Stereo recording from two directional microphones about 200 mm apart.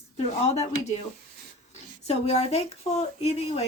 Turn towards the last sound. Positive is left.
turn(degrees=30)  # may be behind; listen again after turning